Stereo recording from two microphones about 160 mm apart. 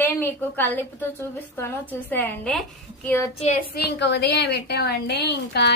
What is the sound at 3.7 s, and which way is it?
Speech, 90° left.